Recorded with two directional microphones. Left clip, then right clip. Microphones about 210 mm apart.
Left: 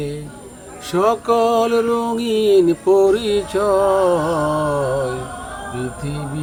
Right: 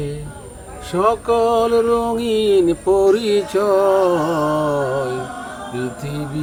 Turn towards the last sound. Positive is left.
turn(degrees=-40)  # may be behind; listen again after turning